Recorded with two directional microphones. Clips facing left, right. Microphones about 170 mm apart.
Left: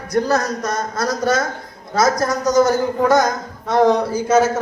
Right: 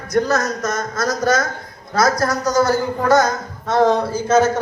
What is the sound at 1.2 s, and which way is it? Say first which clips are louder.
A woman's voice: right 1 dB; 25° left (ahead or behind).